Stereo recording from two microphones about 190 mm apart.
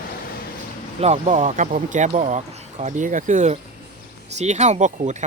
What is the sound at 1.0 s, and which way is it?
Speech, 35° right (ahead or behind).